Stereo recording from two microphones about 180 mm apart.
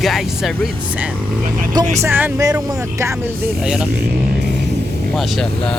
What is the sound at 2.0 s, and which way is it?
Speech, 15° right (ahead or behind).